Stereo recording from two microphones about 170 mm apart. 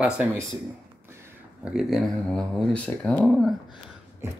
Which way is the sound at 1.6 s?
Centre (ahead or behind).